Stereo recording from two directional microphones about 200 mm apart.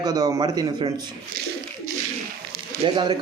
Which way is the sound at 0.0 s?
20° right (ahead or behind).